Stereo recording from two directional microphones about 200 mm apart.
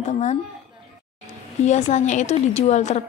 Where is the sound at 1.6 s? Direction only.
35° left (ahead or behind).